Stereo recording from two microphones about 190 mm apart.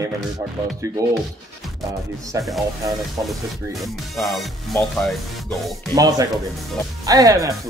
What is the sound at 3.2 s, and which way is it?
Speech, centre (ahead or behind).